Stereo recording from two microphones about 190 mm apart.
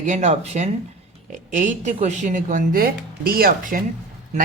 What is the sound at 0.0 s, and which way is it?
Speech, 40° right (ahead or behind).